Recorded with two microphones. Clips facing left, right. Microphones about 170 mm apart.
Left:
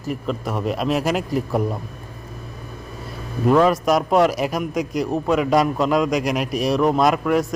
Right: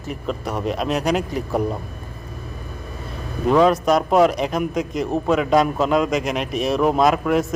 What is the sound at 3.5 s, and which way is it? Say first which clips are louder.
A man's voice: even; centre (ahead or behind).